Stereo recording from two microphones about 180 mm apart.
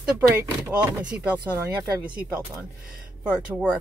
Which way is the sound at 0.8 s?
5° right (ahead or behind).